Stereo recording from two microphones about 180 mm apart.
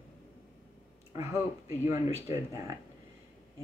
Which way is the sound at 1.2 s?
15° right (ahead or behind).